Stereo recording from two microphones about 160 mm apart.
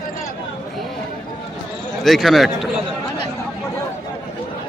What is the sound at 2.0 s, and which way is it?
Speech, centre (ahead or behind).